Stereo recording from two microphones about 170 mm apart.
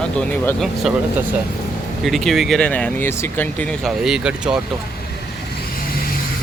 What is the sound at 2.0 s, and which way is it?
Speech, centre (ahead or behind).